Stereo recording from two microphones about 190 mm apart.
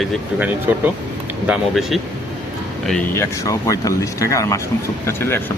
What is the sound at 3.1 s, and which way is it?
Speech, 15° left (ahead or behind).